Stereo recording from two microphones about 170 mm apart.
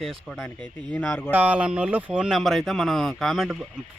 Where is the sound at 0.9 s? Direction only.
10° left (ahead or behind).